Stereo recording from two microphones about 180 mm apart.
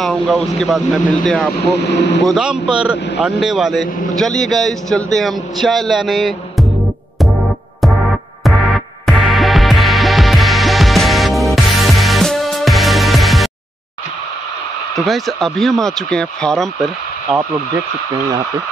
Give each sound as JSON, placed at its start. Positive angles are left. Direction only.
{"t": 0.0, "sound": "a man's voice", "side_deg": 0}
{"t": 2.0, "sound": "speech", "side_deg": 75}
{"t": 2.2, "sound": "a man's voice", "side_deg": -5}
{"t": 8.5, "sound": "music", "side_deg": 0}
{"t": 15.0, "sound": "a man's voice", "side_deg": 0}